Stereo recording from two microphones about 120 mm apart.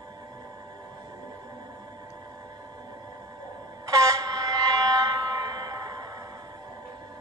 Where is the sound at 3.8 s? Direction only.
30° right (ahead or behind).